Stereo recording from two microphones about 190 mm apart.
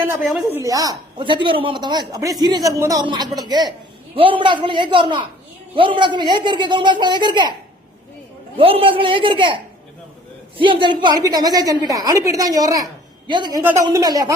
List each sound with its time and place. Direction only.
0.0 s speech: 15° right (ahead or behind)
8.5 s speech: 30° right (ahead or behind)
10.6 s speech: 25° right (ahead or behind)
13.6 s speech: 10° right (ahead or behind)